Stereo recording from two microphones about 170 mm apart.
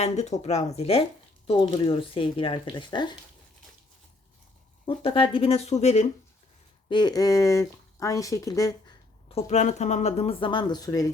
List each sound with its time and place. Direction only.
0.0 s speech: 40° left (ahead or behind)
4.9 s speech: 30° left (ahead or behind)
6.8 s speech: 25° left (ahead or behind)
9.3 s speech: 40° left (ahead or behind); by 11.1 s 20° left (ahead or behind)